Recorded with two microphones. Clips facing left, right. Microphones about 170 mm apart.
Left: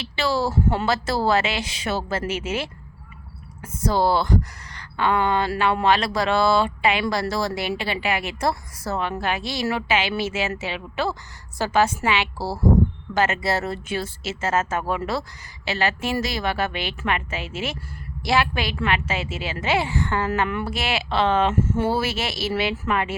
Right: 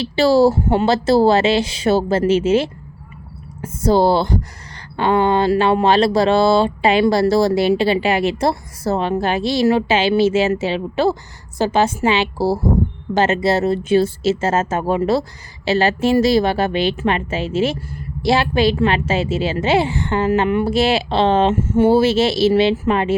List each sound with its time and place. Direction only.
0.0 s mantra: 35° right (ahead or behind)